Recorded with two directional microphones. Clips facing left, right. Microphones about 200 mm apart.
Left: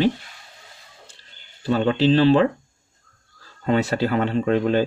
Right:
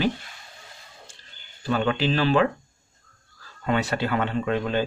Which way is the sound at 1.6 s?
30° left (ahead or behind).